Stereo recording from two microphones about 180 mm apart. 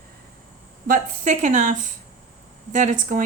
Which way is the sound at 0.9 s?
45° right (ahead or behind).